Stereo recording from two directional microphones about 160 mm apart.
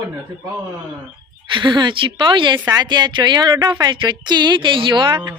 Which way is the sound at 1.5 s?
30° right (ahead or behind).